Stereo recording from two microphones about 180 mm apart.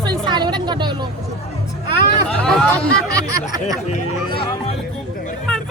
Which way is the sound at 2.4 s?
Centre (ahead or behind).